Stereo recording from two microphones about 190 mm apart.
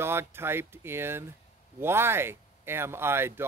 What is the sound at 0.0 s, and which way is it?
Speech, 10° right (ahead or behind).